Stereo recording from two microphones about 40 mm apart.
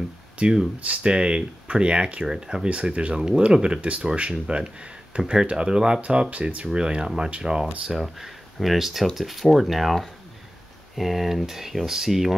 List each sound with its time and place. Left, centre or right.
0.4 s speech: right
0.7 s speech: right
2.2 s speech: centre
5.9 s speech: right
7.8 s speech: centre